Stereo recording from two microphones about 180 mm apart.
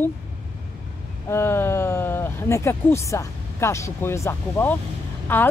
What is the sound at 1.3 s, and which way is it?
Speech, 15° left (ahead or behind).